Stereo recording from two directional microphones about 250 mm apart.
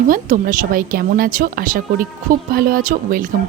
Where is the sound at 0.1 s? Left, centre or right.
Right.